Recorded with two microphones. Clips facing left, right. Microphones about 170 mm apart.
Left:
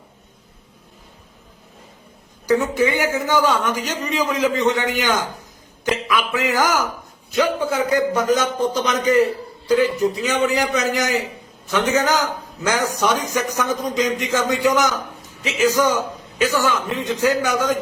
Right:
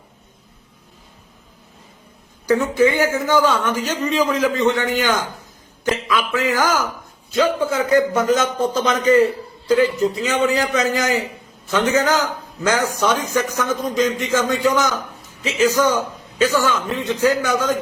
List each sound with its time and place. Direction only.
2.5 s a man's voice: 15° left (ahead or behind)
10.4 s a man's voice: 15° left (ahead or behind)